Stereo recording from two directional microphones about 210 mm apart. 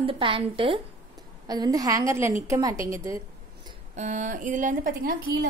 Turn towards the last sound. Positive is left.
turn(degrees=-40)  # may be behind; listen again after turning